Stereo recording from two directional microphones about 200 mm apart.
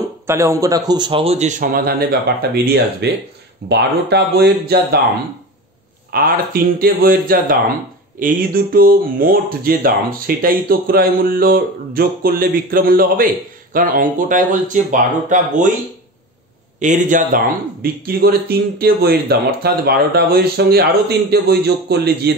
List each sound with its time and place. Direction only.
0.3 s a man's voice: 15° right (ahead or behind); by 4.7 s 55° right (ahead or behind)
6.1 s a man's voice: 45° right (ahead or behind)
16.8 s a man's voice: 40° right (ahead or behind)